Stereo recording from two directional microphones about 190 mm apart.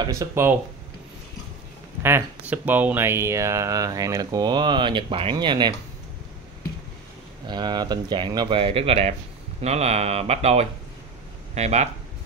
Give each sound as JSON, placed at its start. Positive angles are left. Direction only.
{"t": 0.0, "sound": "speech", "side_deg": -15}
{"t": 2.0, "sound": "speech", "side_deg": -10}
{"t": 7.4, "sound": "speech", "side_deg": -20}